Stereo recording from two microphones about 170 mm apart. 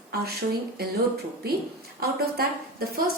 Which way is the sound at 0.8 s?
65° right (ahead or behind).